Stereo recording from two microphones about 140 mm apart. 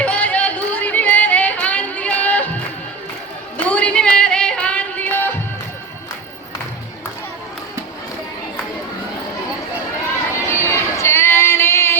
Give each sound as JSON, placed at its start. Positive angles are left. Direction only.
{"t": 0.0, "sound": "music", "side_deg": 10}
{"t": 3.6, "sound": "music", "side_deg": 10}
{"t": 10.4, "sound": "music", "side_deg": 20}